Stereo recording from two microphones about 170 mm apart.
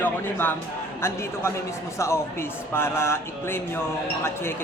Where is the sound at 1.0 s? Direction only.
15° left (ahead or behind).